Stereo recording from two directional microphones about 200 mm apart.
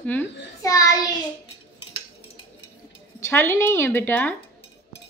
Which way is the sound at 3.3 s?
10° left (ahead or behind).